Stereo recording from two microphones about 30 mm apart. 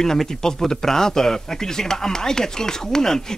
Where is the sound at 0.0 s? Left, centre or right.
Centre.